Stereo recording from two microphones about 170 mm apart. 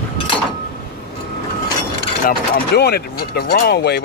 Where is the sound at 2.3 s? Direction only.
70° left (ahead or behind).